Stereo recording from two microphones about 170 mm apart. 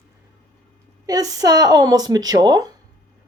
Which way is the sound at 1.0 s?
20° right (ahead or behind).